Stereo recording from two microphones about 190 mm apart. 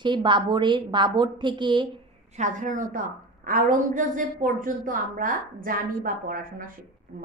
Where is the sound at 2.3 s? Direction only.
40° right (ahead or behind).